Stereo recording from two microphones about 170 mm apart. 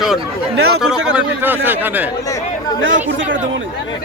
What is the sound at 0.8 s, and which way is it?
A man's voice, 5° right (ahead or behind).